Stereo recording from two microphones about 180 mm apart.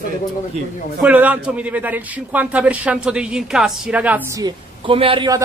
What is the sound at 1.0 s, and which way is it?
A man's voice, 10° right (ahead or behind).